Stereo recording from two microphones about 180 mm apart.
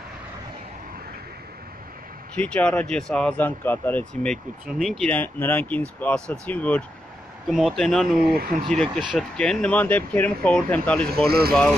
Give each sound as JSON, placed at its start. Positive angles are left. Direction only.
{"t": 2.3, "sound": "speech", "side_deg": 5}
{"t": 8.4, "sound": "speech", "side_deg": -50}
{"t": 8.7, "sound": "speech", "side_deg": 5}
{"t": 11.2, "sound": "speech", "side_deg": -60}